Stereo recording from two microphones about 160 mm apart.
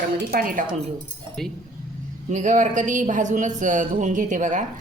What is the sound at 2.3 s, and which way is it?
Speech, 50° right (ahead or behind).